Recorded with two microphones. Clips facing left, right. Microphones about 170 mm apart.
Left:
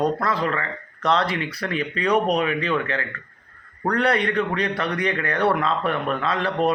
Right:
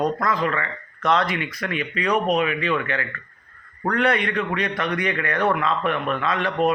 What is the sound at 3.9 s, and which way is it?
A man's voice, 35° left (ahead or behind).